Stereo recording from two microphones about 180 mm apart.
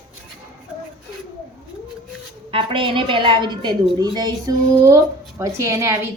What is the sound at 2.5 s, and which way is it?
A woman's voice, 30° right (ahead or behind).